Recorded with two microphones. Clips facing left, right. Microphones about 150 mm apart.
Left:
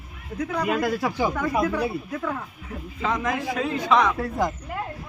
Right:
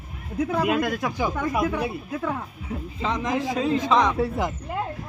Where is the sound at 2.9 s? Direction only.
25° right (ahead or behind).